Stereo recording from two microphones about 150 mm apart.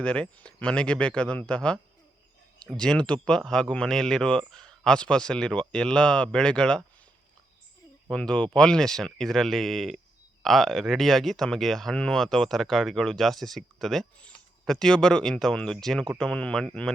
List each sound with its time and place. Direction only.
0.0 s speech: 5° left (ahead or behind)
8.1 s speech: 5° left (ahead or behind)